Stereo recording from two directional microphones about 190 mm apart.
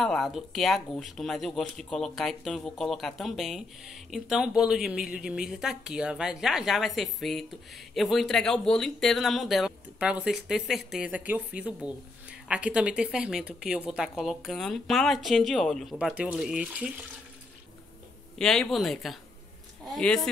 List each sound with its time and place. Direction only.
0.0 s speech: centre (ahead or behind)
18.4 s speech: 5° left (ahead or behind)